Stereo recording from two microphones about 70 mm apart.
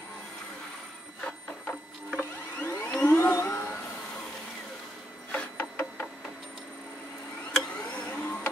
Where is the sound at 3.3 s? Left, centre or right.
Left.